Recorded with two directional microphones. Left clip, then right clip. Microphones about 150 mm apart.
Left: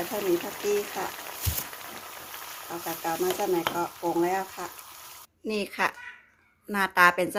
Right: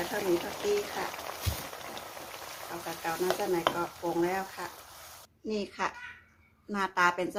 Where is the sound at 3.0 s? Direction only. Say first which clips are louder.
Left 3 dB; 20° left (ahead or behind).